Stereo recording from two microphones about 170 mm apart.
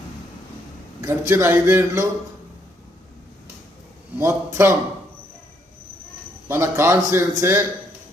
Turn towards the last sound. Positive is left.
turn(degrees=-15)  # may be behind; listen again after turning